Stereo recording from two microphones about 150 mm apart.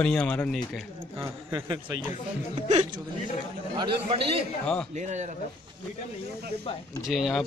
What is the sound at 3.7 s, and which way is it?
Speech, 35° right (ahead or behind).